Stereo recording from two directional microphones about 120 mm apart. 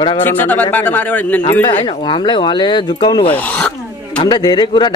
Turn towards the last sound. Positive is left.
turn(degrees=40)  # may be behind; listen again after turning